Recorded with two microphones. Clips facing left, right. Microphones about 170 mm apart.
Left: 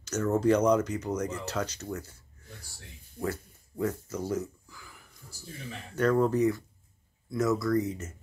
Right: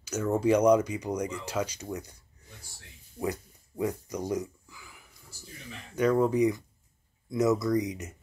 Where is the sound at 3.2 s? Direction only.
15° right (ahead or behind).